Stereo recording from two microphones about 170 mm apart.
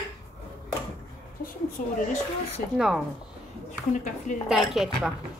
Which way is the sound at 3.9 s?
45° left (ahead or behind).